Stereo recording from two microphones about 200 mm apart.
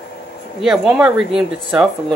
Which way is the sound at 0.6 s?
Centre (ahead or behind).